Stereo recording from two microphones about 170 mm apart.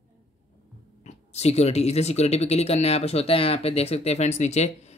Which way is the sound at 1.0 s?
40° left (ahead or behind).